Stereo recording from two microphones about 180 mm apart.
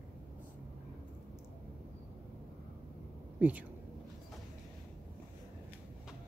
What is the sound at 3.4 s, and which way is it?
Speech, 10° right (ahead or behind).